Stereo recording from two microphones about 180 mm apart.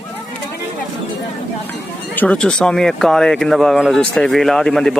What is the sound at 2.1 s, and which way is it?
Speech, 10° left (ahead or behind).